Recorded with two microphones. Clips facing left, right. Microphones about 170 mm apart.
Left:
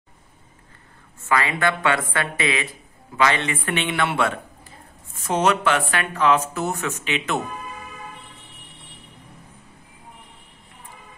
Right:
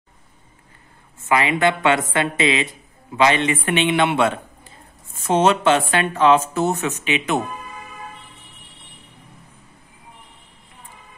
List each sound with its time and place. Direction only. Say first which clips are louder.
1.3 s speech: right 4 dB; 20° right (ahead or behind)